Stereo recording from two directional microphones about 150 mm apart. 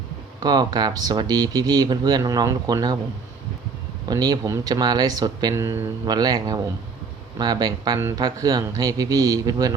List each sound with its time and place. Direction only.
0.3 s speech: 25° right (ahead or behind)
4.1 s speech: 25° right (ahead or behind)
6.1 s speech: 25° right (ahead or behind)